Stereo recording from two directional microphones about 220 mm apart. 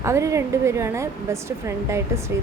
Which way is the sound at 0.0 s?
15° right (ahead or behind).